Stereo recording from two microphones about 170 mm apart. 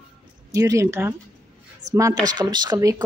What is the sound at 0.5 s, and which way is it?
Speech, 20° right (ahead or behind).